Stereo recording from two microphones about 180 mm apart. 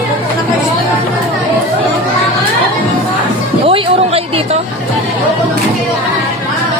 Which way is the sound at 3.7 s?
30° right (ahead or behind).